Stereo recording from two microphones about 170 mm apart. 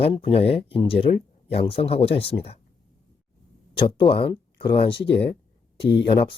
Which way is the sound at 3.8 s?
30° left (ahead or behind).